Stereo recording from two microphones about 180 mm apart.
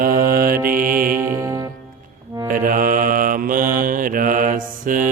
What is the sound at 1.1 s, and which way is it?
Music, 10° right (ahead or behind).